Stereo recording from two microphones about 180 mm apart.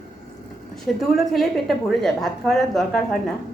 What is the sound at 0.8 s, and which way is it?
A woman's voice, centre (ahead or behind).